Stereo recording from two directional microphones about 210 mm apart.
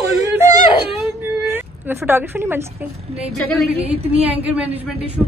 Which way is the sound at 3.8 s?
30° right (ahead or behind).